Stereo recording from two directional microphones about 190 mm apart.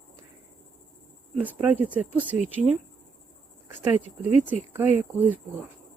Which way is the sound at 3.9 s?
35° left (ahead or behind).